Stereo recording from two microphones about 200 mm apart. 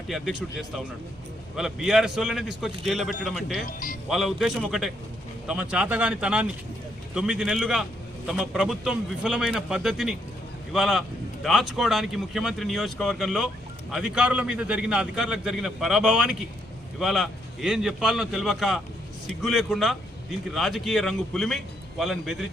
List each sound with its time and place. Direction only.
1.5 s a man's voice: 5° right (ahead or behind)
3.7 s speech: 45° left (ahead or behind)
4.1 s a man's voice: centre (ahead or behind)